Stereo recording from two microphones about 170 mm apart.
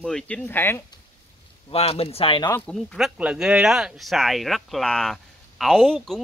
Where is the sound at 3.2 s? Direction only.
5° right (ahead or behind).